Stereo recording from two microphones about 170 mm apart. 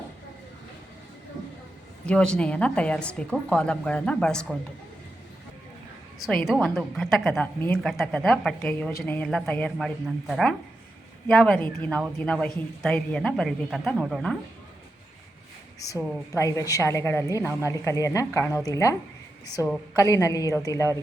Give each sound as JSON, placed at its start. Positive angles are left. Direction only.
{"t": 2.0, "sound": "a woman's voice", "side_deg": 5}
{"t": 6.1, "sound": "a woman's voice", "side_deg": 0}
{"t": 16.4, "sound": "a woman's voice", "side_deg": 20}
{"t": 20.0, "sound": "a woman's voice", "side_deg": 20}